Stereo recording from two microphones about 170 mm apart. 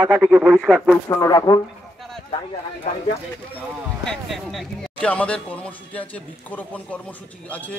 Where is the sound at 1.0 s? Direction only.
20° left (ahead or behind).